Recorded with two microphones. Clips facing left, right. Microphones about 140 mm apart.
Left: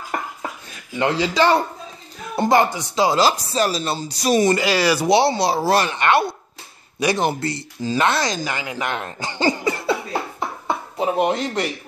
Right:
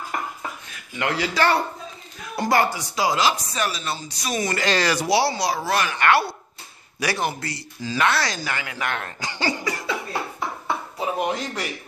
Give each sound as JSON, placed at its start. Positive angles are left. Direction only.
{"t": 0.1, "sound": "a sound", "side_deg": 40}
{"t": 0.9, "sound": "speech", "side_deg": 25}
{"t": 4.6, "sound": "speech", "side_deg": 10}
{"t": 5.0, "sound": "speech", "side_deg": 25}
{"t": 9.7, "sound": "a sound", "side_deg": 30}
{"t": 11.0, "sound": "speech", "side_deg": 25}